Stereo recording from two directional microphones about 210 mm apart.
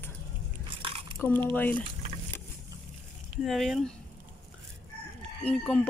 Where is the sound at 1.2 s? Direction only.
10° left (ahead or behind).